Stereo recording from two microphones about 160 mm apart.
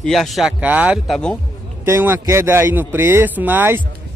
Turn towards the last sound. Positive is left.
turn(degrees=-10)  # may be behind; listen again after turning